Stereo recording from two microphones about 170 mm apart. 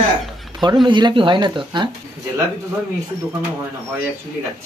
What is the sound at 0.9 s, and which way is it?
Speech, 25° right (ahead or behind).